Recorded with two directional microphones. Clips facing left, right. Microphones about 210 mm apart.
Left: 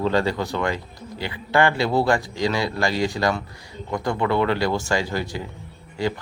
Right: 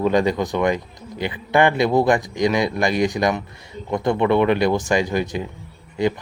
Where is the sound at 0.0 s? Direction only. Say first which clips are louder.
Right 3 dB; 15° right (ahead or behind).